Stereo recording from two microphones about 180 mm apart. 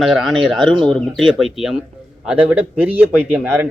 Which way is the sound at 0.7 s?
25° right (ahead or behind).